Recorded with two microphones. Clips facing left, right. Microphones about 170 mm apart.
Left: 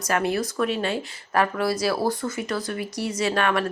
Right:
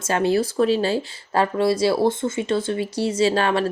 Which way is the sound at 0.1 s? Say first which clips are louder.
Right 4 dB; 30° right (ahead or behind).